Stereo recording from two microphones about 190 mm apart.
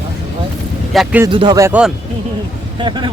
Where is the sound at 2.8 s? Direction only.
25° right (ahead or behind).